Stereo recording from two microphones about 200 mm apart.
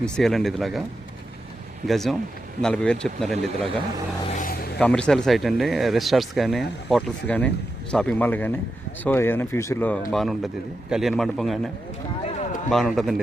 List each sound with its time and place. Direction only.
0.0 s speech: centre (ahead or behind)
1.9 s speech: centre (ahead or behind)
4.3 s a sound: 45° left (ahead or behind)
4.8 s speech: 5° left (ahead or behind)
12.2 s run: 35° left (ahead or behind)
12.7 s speech: centre (ahead or behind)